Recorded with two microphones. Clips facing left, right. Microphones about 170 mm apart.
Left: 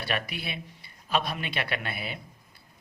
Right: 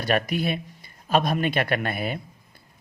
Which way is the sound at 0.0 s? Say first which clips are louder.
Right 9 dB; 45° right (ahead or behind).